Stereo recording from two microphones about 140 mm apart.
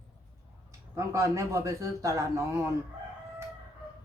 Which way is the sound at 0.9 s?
20° right (ahead or behind).